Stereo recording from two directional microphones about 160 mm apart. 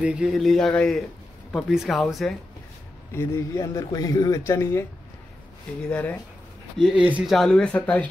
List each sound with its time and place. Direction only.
0.0 s speech: 5° right (ahead or behind)
3.2 s speech: 20° left (ahead or behind)
6.8 s speech: 5° right (ahead or behind)
7.3 s speech: 5° left (ahead or behind)